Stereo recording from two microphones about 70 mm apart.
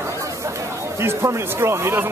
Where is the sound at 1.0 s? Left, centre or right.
Right.